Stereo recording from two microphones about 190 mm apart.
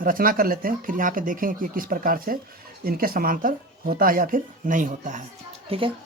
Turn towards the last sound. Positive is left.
turn(degrees=-30)  # may be behind; listen again after turning